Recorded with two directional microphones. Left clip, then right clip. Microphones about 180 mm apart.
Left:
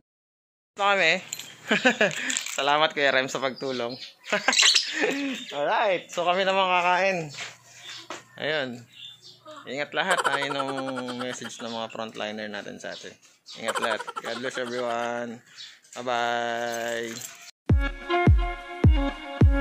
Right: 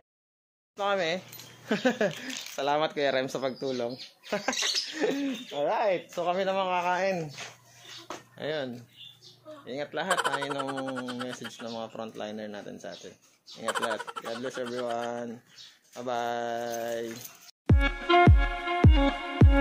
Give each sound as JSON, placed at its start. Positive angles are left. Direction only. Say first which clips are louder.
{"t": 0.7, "sound": "speech", "louder": "left 7 dB", "side_deg": 5}
{"t": 8.4, "sound": "speech", "louder": "left 5 dB", "side_deg": 10}
{"t": 17.6, "sound": "music", "louder": "right 3 dB", "side_deg": 0}